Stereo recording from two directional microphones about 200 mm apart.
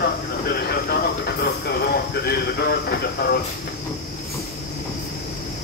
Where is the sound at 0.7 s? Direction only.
50° left (ahead or behind).